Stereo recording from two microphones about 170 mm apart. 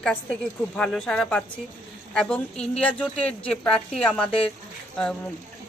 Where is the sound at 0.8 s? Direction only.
5° left (ahead or behind).